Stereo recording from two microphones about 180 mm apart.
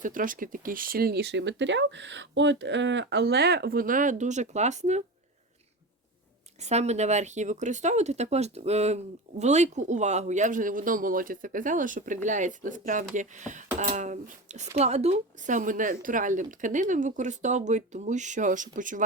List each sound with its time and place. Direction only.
0.0 s speech: 50° right (ahead or behind)
6.6 s speech: 40° right (ahead or behind)